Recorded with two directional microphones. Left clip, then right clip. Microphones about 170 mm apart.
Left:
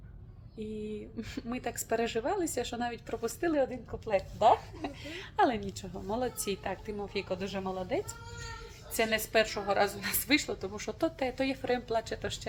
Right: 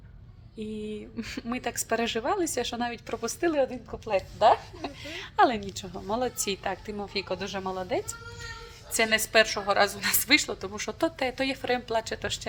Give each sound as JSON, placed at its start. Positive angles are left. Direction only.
{"t": 0.6, "sound": "a woman's voice", "side_deg": -15}